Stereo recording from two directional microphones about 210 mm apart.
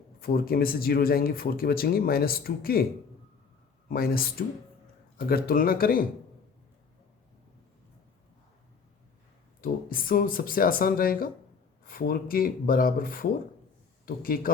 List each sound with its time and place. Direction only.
0.2 s speech: 45° left (ahead or behind)
3.8 s speech: 45° left (ahead or behind)
9.6 s speech: 40° left (ahead or behind)